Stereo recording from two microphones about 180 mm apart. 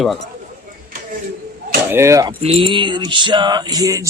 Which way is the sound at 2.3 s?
30° right (ahead or behind).